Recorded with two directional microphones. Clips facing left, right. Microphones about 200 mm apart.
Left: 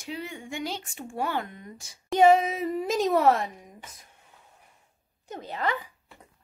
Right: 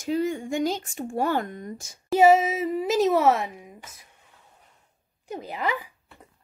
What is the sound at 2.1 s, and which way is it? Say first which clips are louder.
Speech: right 2 dB; 5° right (ahead or behind).